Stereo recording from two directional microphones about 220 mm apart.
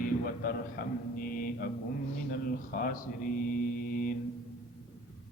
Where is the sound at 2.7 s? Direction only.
40° left (ahead or behind).